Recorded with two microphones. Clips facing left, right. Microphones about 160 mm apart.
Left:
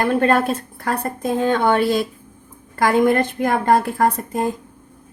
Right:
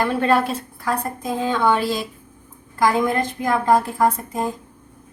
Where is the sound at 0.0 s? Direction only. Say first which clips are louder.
Left 2 dB; 50° left (ahead or behind).